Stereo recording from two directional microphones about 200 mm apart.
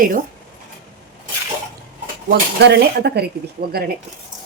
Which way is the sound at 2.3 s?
55° right (ahead or behind).